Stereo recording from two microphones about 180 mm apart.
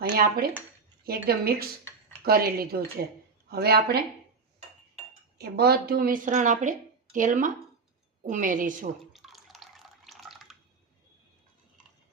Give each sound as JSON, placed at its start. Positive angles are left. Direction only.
{"t": 0.0, "sound": "speech", "side_deg": -55}
{"t": 5.4, "sound": "a woman's voice", "side_deg": -60}
{"t": 9.1, "sound": "water", "side_deg": 0}